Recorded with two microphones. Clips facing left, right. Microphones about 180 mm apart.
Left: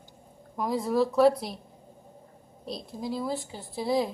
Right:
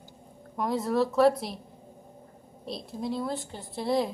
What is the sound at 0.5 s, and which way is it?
A woman's voice, centre (ahead or behind).